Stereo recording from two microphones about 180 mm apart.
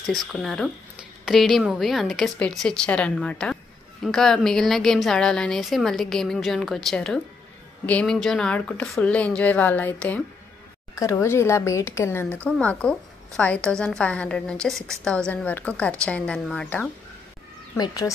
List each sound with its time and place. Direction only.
0.1 s a woman's voice: centre (ahead or behind)
17.7 s speech: 20° left (ahead or behind)